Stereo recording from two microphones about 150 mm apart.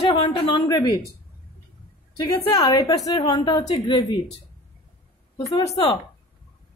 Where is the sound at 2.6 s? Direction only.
25° left (ahead or behind).